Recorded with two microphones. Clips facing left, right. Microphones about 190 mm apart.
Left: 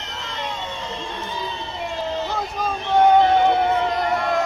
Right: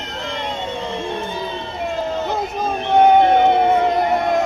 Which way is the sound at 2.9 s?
20° right (ahead or behind).